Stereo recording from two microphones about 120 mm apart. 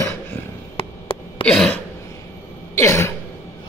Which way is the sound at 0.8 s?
50° left (ahead or behind).